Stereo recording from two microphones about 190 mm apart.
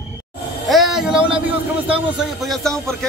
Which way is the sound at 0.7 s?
Centre (ahead or behind).